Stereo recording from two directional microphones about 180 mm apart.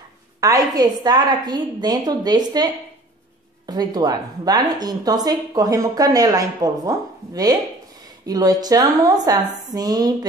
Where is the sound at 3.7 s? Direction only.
20° right (ahead or behind).